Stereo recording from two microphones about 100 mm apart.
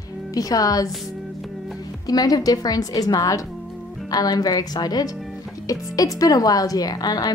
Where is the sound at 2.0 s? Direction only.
40° left (ahead or behind).